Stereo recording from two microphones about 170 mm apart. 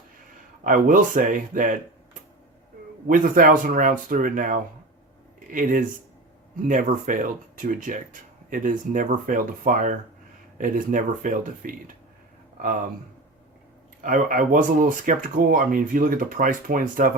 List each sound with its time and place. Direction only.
0.6 s speech: 50° right (ahead or behind)
3.1 s speech: 50° right (ahead or behind)
14.0 s speech: 50° right (ahead or behind)